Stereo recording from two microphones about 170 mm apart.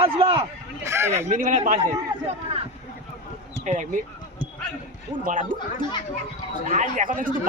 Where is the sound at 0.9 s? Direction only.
15° right (ahead or behind).